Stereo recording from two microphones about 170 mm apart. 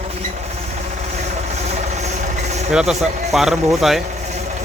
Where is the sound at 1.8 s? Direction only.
40° right (ahead or behind).